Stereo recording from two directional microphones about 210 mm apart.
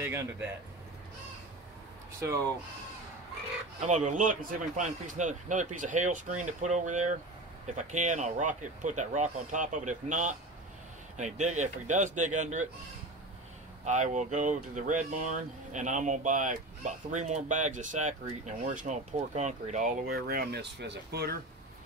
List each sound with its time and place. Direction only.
0.0 s speech: 10° right (ahead or behind)
2.1 s speech: 15° right (ahead or behind)
3.8 s speech: 35° right (ahead or behind)
13.8 s speech: 35° right (ahead or behind)